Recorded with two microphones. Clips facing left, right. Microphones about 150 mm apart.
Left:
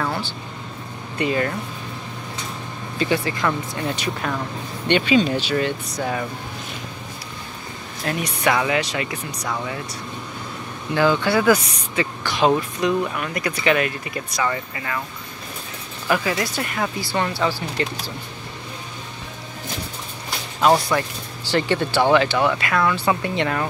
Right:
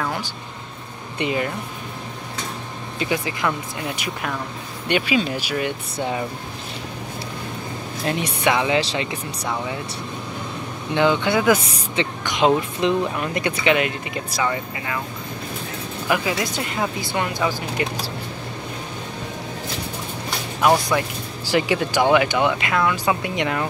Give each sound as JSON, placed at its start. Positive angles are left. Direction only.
{"t": 1.1, "sound": "speech", "side_deg": -20}
{"t": 3.0, "sound": "speech", "side_deg": -15}
{"t": 8.0, "sound": "speech", "side_deg": -20}
{"t": 11.0, "sound": "speech", "side_deg": -20}
{"t": 16.1, "sound": "speech", "side_deg": -15}
{"t": 20.9, "sound": "speech", "side_deg": -10}